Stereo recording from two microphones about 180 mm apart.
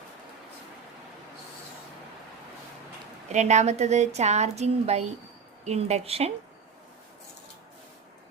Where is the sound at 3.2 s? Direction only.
40° right (ahead or behind).